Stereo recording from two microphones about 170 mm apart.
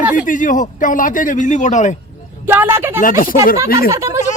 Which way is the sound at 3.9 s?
15° right (ahead or behind).